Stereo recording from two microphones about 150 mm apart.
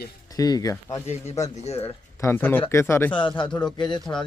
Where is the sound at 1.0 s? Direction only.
45° left (ahead or behind).